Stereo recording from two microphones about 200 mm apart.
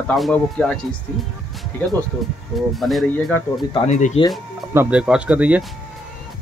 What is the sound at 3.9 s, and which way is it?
Speech, 35° left (ahead or behind).